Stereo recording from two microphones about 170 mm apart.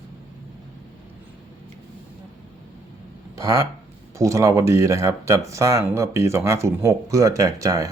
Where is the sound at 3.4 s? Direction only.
20° right (ahead or behind).